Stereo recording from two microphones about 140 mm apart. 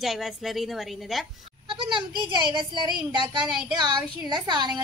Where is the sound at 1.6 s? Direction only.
35° right (ahead or behind).